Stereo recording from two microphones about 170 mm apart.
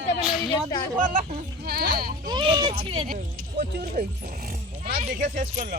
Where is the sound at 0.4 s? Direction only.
25° left (ahead or behind).